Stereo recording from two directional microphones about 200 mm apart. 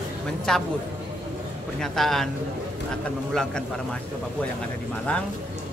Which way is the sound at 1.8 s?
Centre (ahead or behind).